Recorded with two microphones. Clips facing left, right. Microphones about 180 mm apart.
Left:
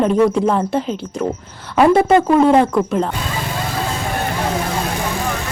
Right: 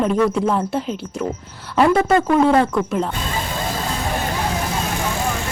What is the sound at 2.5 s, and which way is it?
Speech, 15° left (ahead or behind).